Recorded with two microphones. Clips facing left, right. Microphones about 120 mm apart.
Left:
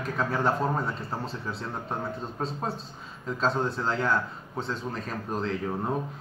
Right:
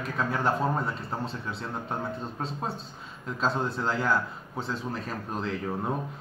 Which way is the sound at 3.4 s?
Centre (ahead or behind).